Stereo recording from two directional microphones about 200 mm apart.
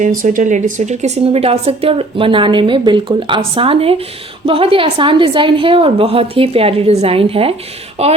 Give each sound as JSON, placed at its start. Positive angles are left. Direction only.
{"t": 0.2, "sound": "a woman's voice", "side_deg": -40}